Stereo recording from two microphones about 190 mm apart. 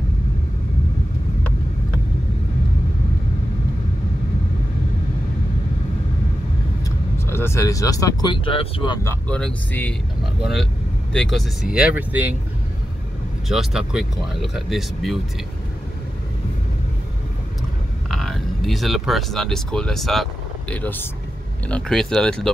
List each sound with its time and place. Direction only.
6.8 s speech: 15° left (ahead or behind)
9.0 s speech: 10° left (ahead or behind)
11.1 s speech: centre (ahead or behind)
13.5 s speech: centre (ahead or behind)
18.1 s speech: centre (ahead or behind)